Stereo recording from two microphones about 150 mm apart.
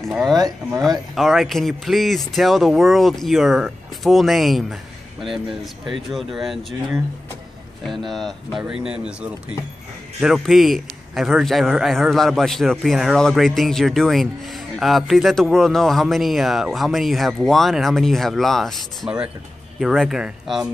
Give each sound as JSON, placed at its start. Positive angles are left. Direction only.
{"t": 0.0, "sound": "a man's voice", "side_deg": 0}
{"t": 0.4, "sound": "speech", "side_deg": -25}
{"t": 0.8, "sound": "a man's voice", "side_deg": 0}
{"t": 8.1, "sound": "a man's voice", "side_deg": 0}